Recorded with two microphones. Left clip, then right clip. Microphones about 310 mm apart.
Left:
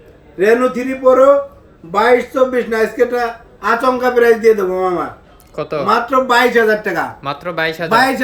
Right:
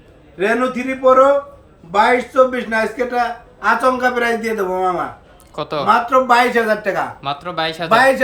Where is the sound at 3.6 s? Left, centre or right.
Centre.